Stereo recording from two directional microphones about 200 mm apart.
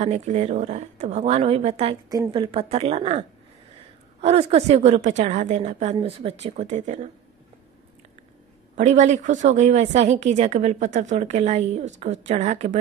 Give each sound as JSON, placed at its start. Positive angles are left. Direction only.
{"t": 0.0, "sound": "a woman's voice", "side_deg": -35}
{"t": 2.0, "sound": "a woman's voice", "side_deg": -20}
{"t": 8.7, "sound": "a woman's voice", "side_deg": -35}